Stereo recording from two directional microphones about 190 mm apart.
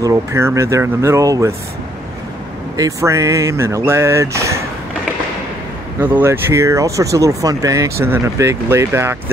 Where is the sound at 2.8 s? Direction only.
15° right (ahead or behind).